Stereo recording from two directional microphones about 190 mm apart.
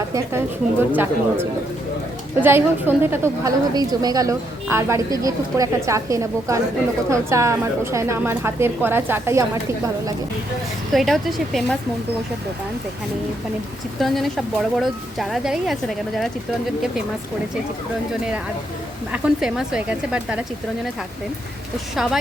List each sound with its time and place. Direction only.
0.1 s a woman's voice: 10° right (ahead or behind)
10.9 s speech: centre (ahead or behind)
14.0 s speech: centre (ahead or behind)
19.1 s speech: 5° right (ahead or behind)